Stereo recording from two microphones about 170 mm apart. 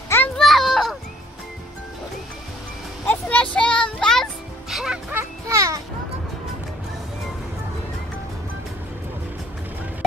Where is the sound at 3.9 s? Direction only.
5° left (ahead or behind).